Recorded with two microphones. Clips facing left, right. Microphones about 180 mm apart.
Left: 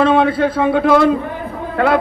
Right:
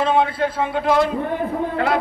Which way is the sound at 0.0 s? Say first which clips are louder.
Left 5 dB; 70° left (ahead or behind).